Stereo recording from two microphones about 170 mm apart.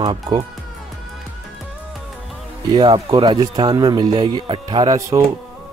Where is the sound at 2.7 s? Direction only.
25° right (ahead or behind).